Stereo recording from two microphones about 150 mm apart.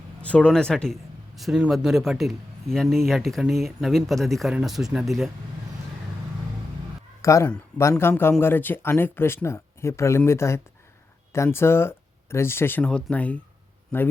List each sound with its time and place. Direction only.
0.2 s speech: 10° left (ahead or behind)
7.2 s speech: 20° left (ahead or behind)